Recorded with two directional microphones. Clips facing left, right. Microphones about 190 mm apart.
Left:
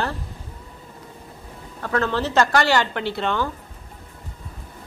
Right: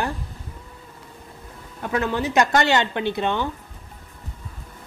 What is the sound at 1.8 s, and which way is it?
Speech, 15° right (ahead or behind).